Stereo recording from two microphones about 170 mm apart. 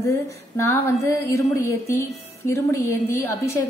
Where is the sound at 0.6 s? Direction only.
15° left (ahead or behind).